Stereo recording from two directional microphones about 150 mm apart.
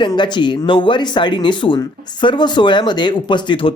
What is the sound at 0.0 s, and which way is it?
Speech, 30° left (ahead or behind).